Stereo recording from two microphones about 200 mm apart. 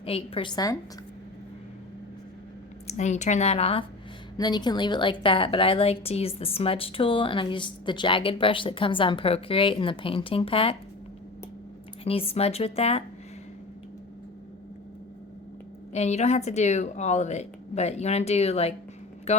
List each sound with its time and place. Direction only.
0.0 s a woman's voice: 30° left (ahead or behind)
2.8 s a woman's voice: 35° left (ahead or behind)
12.0 s a woman's voice: 30° left (ahead or behind)
15.9 s speech: 35° left (ahead or behind)